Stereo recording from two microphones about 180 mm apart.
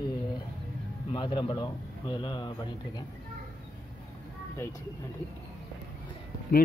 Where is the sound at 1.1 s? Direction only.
25° left (ahead or behind).